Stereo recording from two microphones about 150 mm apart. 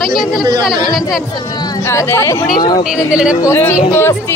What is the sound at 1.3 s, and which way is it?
Speech, 25° left (ahead or behind).